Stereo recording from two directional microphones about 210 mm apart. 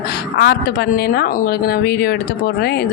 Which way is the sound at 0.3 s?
50° left (ahead or behind).